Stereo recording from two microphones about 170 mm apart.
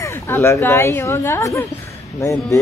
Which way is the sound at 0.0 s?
15° left (ahead or behind).